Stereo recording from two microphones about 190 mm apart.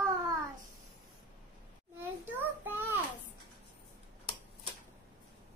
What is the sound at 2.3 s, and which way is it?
Child singing, 10° right (ahead or behind).